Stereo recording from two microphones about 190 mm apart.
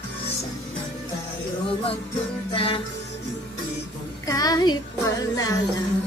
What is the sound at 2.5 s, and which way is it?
Music, 30° left (ahead or behind).